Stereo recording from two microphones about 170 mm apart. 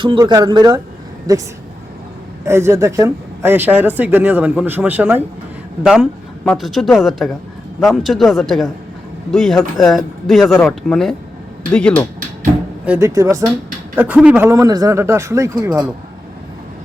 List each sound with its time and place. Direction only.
0.0 s speech: 25° right (ahead or behind); by 12.0 s 5° left (ahead or behind)
12.8 s speech: 10° right (ahead or behind)